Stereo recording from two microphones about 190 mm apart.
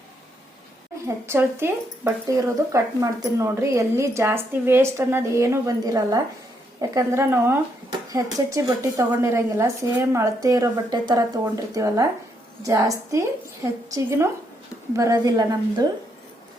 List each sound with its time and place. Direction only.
1.0 s a woman's voice: 15° right (ahead or behind)